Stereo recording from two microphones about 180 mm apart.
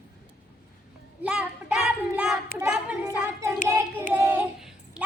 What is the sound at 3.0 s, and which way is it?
Hands, 15° right (ahead or behind).